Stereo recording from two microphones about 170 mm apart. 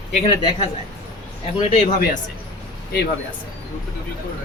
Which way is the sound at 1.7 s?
45° left (ahead or behind).